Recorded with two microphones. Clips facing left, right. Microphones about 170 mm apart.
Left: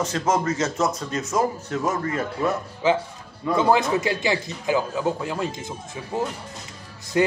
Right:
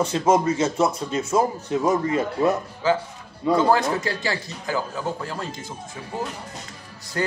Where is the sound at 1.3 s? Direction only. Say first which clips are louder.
Right 2 dB; 25° right (ahead or behind).